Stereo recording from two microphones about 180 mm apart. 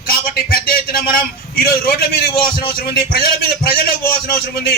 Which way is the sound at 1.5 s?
60° left (ahead or behind).